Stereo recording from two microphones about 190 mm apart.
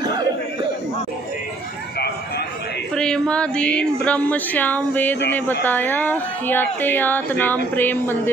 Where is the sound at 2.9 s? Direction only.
5° left (ahead or behind).